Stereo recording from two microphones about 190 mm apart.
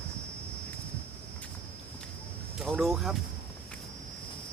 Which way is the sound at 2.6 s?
Centre (ahead or behind).